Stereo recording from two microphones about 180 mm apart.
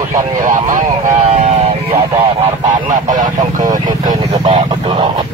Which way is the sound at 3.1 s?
20° right (ahead or behind).